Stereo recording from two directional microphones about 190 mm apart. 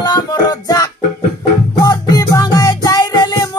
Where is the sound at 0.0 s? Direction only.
20° left (ahead or behind).